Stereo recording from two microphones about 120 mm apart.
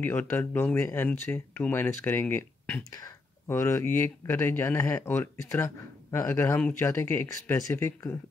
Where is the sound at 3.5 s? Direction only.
20° left (ahead or behind).